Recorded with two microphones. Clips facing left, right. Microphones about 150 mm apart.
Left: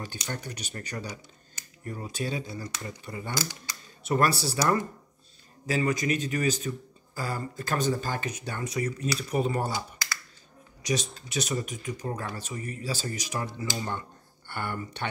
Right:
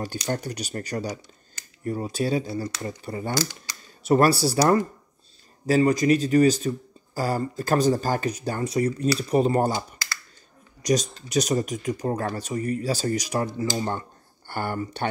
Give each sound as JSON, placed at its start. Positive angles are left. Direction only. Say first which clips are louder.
{"t": 0.0, "sound": "speech", "louder": "right 8 dB", "side_deg": -40}
{"t": 10.8, "sound": "speech", "louder": "right 7 dB", "side_deg": -40}